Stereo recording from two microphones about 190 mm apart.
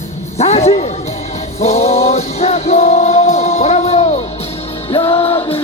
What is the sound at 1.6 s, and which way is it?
Music, 35° left (ahead or behind).